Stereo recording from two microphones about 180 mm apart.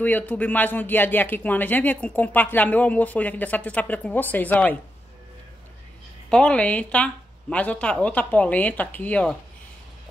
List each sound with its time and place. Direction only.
0.0 s speech: 10° left (ahead or behind)
6.3 s speech: 5° left (ahead or behind)